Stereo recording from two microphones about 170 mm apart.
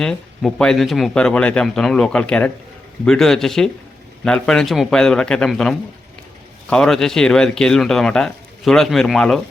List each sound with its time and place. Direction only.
0.0 s speech: 5° left (ahead or behind)